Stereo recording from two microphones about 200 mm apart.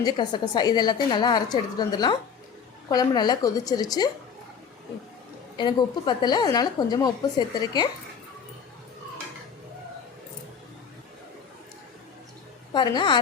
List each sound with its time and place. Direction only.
0.0 s a woman's voice: 20° left (ahead or behind)
5.5 s a woman's voice: 20° left (ahead or behind)
12.7 s a woman's voice: 20° left (ahead or behind)